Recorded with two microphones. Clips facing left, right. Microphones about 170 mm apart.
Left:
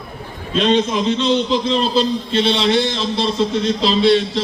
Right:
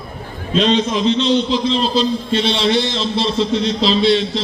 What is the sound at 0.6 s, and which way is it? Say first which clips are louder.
A man's voice: even; 55° left (ahead or behind).